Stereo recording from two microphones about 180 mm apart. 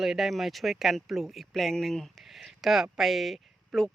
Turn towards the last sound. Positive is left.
turn(degrees=0)  # may be behind; listen again after turning